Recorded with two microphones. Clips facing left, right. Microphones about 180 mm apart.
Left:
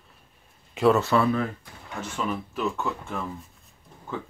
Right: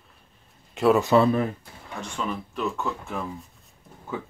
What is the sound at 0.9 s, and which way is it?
Speech, 20° right (ahead or behind).